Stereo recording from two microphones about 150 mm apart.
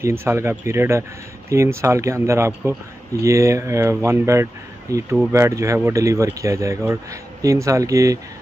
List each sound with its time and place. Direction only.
0.0 s speech: 15° right (ahead or behind)